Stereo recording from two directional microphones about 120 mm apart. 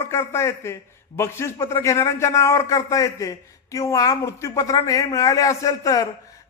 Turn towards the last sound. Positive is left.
turn(degrees=30)  # may be behind; listen again after turning